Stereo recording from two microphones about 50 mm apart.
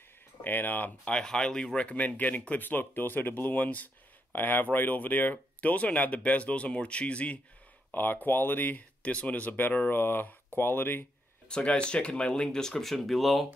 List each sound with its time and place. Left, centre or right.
0.4 s speech: left
1.0 s speech: centre
1.8 s speech: left
7.9 s speech: left
9.0 s speech: left
11.4 s speech: centre